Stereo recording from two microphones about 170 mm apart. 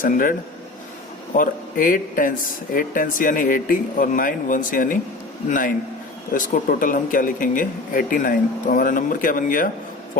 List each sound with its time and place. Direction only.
0.0 s speech: 55° left (ahead or behind)
1.4 s speech: 55° left (ahead or behind)